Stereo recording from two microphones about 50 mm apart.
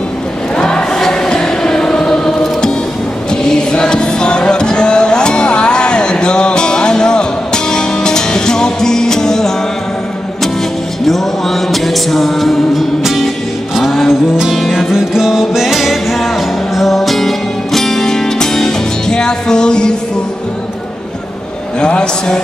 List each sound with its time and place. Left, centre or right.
0.6 s choir: centre
11.1 s music: centre
14.3 s music: centre
21.8 s a sound: centre